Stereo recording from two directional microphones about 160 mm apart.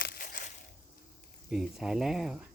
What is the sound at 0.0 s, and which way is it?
Crushing, 65° left (ahead or behind).